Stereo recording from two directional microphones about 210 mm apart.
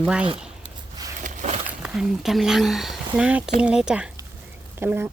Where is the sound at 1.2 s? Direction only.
35° right (ahead or behind).